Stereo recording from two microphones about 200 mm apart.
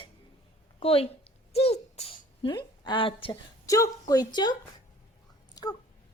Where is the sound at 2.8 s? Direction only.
25° left (ahead or behind).